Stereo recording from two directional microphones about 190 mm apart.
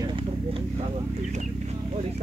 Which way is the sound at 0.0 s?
25° right (ahead or behind).